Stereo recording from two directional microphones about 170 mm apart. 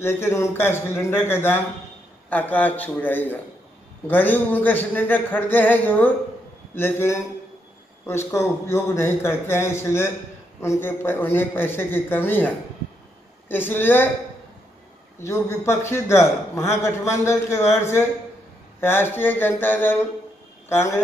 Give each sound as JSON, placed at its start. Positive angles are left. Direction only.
{"t": 0.0, "sound": "a man's voice", "side_deg": 15}
{"t": 15.1, "sound": "a man's voice", "side_deg": 15}
{"t": 18.8, "sound": "a man's voice", "side_deg": 15}